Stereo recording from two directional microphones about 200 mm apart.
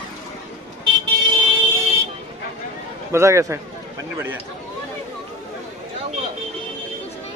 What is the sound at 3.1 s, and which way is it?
Speech, 15° right (ahead or behind).